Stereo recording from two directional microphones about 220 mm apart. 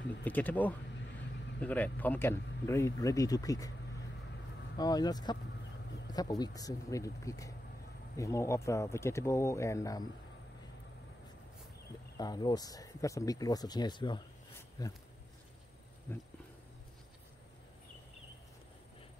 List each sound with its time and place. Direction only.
0.2 s speech: 10° left (ahead or behind)
4.7 s speech: 20° left (ahead or behind)
12.2 s speech: 20° left (ahead or behind)